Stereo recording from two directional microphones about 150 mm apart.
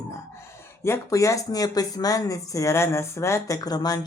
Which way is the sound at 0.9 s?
20° left (ahead or behind).